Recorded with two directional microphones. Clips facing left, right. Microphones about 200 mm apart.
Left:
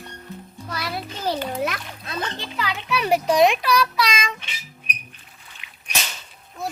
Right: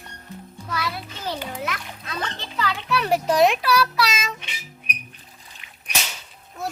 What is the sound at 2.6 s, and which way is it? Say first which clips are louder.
A child's voice: even; centre (ahead or behind).